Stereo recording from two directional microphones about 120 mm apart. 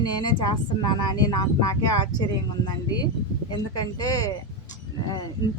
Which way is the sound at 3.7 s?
30° left (ahead or behind).